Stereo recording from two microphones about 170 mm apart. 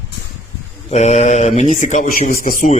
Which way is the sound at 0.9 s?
40° left (ahead or behind).